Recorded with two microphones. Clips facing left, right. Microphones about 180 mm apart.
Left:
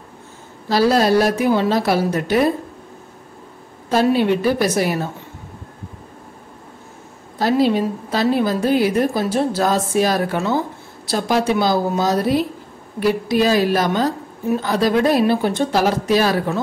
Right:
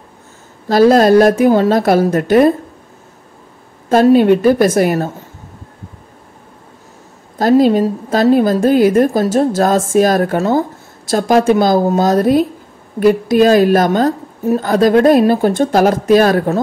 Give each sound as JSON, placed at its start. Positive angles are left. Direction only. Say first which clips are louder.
{"t": 0.7, "sound": "a woman's voice", "louder": "right 7 dB", "side_deg": -50}
{"t": 3.9, "sound": "a woman's voice", "louder": "right 7 dB", "side_deg": -50}
{"t": 7.3, "sound": "a woman's voice", "louder": "right 6 dB", "side_deg": -45}